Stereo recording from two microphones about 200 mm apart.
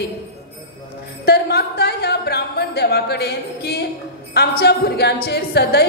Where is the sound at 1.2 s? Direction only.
50° left (ahead or behind).